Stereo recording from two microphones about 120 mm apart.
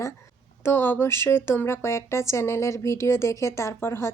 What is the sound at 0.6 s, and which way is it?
A woman's voice, 15° left (ahead or behind).